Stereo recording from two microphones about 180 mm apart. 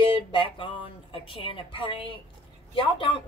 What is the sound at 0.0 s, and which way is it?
Speech, 30° left (ahead or behind).